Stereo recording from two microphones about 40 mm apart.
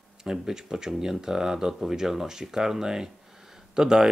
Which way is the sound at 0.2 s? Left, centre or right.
Centre.